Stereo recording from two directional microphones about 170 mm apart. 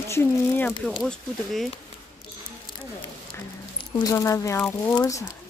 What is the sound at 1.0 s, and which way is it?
Speech, centre (ahead or behind).